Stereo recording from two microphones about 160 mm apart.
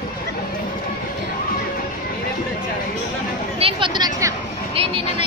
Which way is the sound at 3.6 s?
30° right (ahead or behind).